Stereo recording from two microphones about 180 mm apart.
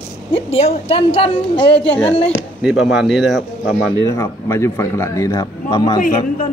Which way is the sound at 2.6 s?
Centre (ahead or behind).